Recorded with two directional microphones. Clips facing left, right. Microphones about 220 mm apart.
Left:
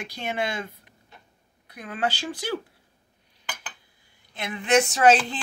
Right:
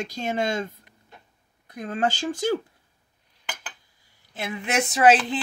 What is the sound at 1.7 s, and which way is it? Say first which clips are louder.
Child singing: right 3 dB; 45° right (ahead or behind).